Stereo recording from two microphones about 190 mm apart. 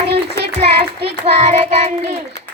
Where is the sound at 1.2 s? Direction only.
35° right (ahead or behind).